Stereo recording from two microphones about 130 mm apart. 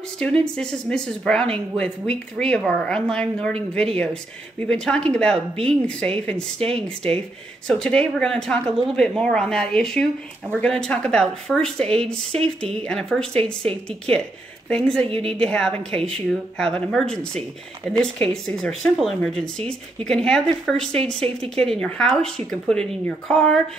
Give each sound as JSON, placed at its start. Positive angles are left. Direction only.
{"t": 0.2, "sound": "speech", "side_deg": 5}
{"t": 6.6, "sound": "speech", "side_deg": -50}
{"t": 7.6, "sound": "speech", "side_deg": 5}
{"t": 15.0, "sound": "speech", "side_deg": -50}
{"t": 15.3, "sound": "speech", "side_deg": 5}